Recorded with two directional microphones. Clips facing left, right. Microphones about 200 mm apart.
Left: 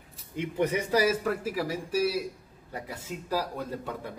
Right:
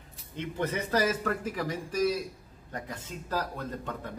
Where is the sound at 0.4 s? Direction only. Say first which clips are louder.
Left 4 dB; 15° left (ahead or behind).